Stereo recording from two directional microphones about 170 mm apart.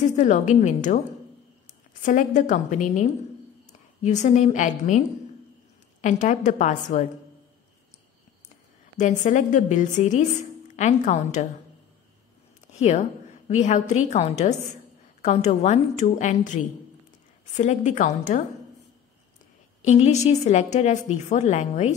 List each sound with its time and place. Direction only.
0.0 s a woman's voice: 45° left (ahead or behind)
2.0 s a woman's voice: 50° left (ahead or behind)
8.9 s a woman's voice: 45° left (ahead or behind)
12.7 s a woman's voice: 40° left (ahead or behind)
17.6 s a woman's voice: 45° left (ahead or behind)
19.8 s a woman's voice: 40° left (ahead or behind)